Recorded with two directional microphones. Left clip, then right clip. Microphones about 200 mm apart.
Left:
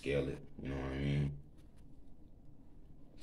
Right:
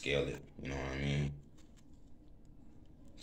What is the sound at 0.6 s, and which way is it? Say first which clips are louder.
Speech: right 1 dB; 35° left (ahead or behind).